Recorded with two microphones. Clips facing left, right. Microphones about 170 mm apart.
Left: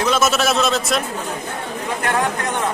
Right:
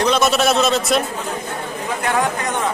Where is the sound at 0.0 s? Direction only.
Centre (ahead or behind).